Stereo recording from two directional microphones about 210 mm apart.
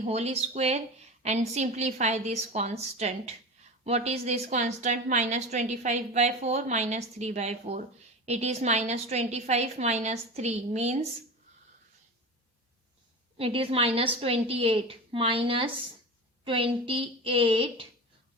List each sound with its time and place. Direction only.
0.0 s a woman's voice: 30° right (ahead or behind)
13.3 s a woman's voice: 25° right (ahead or behind)